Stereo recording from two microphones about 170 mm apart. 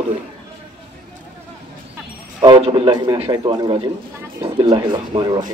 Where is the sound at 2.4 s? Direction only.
30° right (ahead or behind).